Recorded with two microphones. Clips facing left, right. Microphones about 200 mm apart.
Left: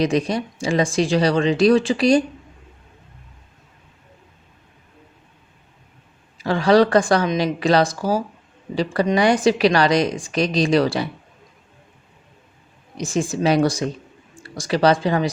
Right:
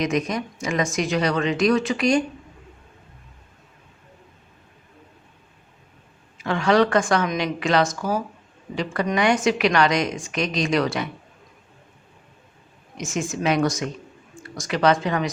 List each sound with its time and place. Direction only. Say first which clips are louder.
0.0 s a woman's voice: left 4 dB; 30° left (ahead or behind)
6.3 s a woman's voice: left 4 dB; 35° left (ahead or behind)
13.0 s a woman's voice: left 5 dB; 35° left (ahead or behind)